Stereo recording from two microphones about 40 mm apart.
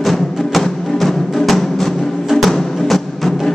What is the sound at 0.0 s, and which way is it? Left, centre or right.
Music, centre.